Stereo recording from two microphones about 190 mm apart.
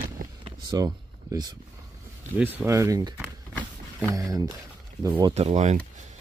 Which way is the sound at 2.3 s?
10° right (ahead or behind).